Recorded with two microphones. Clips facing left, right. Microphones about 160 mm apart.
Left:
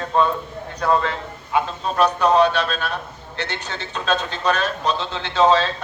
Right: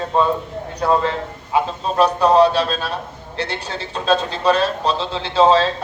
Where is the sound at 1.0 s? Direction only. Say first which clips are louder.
Right 4 dB; 30° right (ahead or behind).